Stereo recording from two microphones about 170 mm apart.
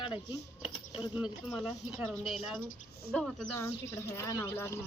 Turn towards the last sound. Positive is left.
turn(degrees=15)  # may be behind; listen again after turning